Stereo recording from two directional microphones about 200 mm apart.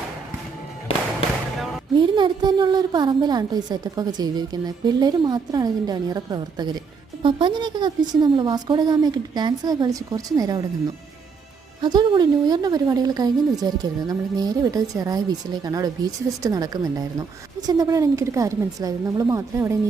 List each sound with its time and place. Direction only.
1.5 s music: centre (ahead or behind)
2.0 s a woman's voice: 25° right (ahead or behind)
11.8 s a woman's voice: 20° right (ahead or behind)